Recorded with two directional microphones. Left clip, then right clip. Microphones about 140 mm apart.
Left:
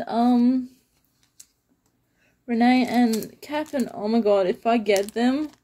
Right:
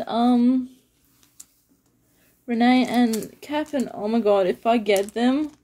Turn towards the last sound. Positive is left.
turn(degrees=5)  # may be behind; listen again after turning